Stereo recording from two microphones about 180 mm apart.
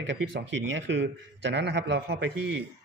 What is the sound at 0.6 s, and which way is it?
A man's voice, 85° right.